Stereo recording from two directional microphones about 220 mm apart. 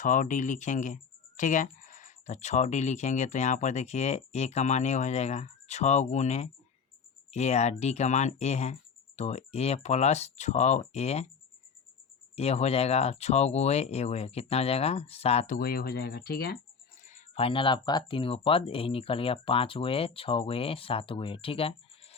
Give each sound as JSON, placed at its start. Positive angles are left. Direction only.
{"t": 0.0, "sound": "speech", "side_deg": 35}
{"t": 12.4, "sound": "speech", "side_deg": 30}
{"t": 15.5, "sound": "speech", "side_deg": 45}
{"t": 17.1, "sound": "speech", "side_deg": 30}